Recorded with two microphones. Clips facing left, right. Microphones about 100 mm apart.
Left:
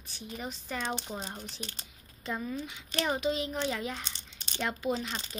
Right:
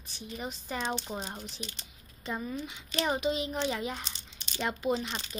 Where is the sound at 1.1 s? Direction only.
20° right (ahead or behind).